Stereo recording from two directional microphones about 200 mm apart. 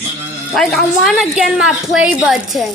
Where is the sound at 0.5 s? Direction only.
Centre (ahead or behind).